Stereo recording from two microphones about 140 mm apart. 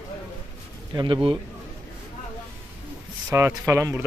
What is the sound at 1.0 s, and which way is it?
Speech, 35° right (ahead or behind).